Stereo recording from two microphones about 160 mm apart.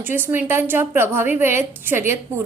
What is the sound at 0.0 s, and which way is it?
A woman's voice, 15° right (ahead or behind).